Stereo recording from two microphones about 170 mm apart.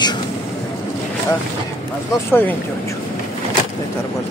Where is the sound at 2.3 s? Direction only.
10° left (ahead or behind).